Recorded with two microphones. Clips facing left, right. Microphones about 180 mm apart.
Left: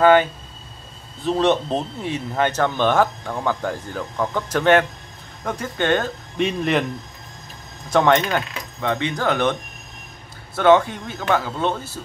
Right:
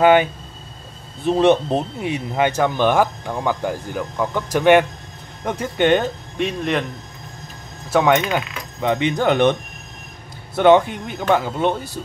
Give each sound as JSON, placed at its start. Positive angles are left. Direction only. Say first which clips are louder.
{"t": 0.0, "sound": "speech", "louder": "right 1 dB", "side_deg": -15}
{"t": 6.3, "sound": "speech", "louder": "left 2 dB", "side_deg": 0}
{"t": 7.9, "sound": "speech", "louder": "right 1 dB", "side_deg": -5}